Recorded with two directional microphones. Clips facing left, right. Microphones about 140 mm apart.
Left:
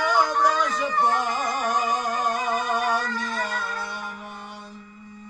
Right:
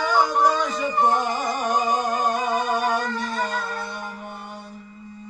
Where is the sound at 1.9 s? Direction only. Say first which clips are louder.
Right 3 dB; 35° right (ahead or behind).